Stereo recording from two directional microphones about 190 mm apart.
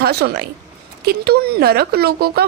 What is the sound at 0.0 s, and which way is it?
A woman's voice, 55° right (ahead or behind).